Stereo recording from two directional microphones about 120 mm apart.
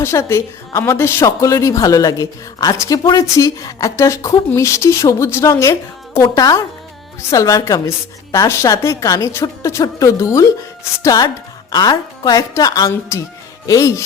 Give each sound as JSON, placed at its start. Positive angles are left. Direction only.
{"t": 0.0, "sound": "a woman's voice", "side_deg": 20}